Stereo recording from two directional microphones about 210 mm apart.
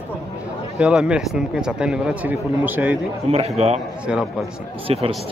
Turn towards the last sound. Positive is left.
turn(degrees=-25)  # may be behind; listen again after turning